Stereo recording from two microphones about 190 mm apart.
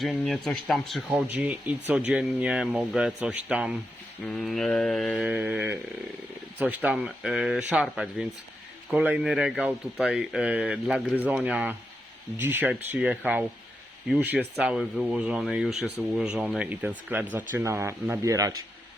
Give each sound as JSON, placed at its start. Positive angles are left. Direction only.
{"t": 0.0, "sound": "speech", "side_deg": 0}
{"t": 5.3, "sound": "speech", "side_deg": -10}